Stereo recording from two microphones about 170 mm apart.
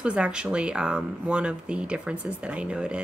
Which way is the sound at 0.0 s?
5° right (ahead or behind).